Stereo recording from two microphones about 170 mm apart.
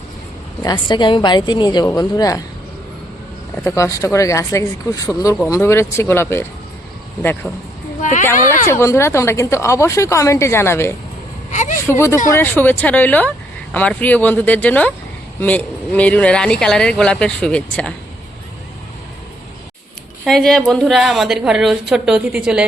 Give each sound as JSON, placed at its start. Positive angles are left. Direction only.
{"t": 0.6, "sound": "a woman's voice", "side_deg": 25}
{"t": 3.5, "sound": "a woman's voice", "side_deg": 15}
{"t": 8.0, "sound": "speech", "side_deg": 45}
{"t": 8.6, "sound": "a woman's voice", "side_deg": 15}
{"t": 11.5, "sound": "a sound", "side_deg": 45}
{"t": 11.9, "sound": "a woman's voice", "side_deg": 15}
{"t": 20.2, "sound": "speech", "side_deg": 0}